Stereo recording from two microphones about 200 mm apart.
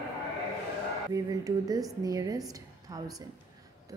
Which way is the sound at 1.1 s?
15° right (ahead or behind).